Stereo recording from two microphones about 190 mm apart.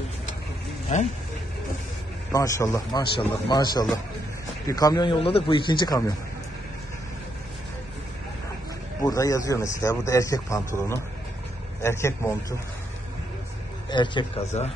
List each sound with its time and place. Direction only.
0.9 s speech: 40° left (ahead or behind)
2.3 s a man's voice: 15° left (ahead or behind)
9.0 s a man's voice: 15° left (ahead or behind)
13.8 s a man's voice: 25° left (ahead or behind)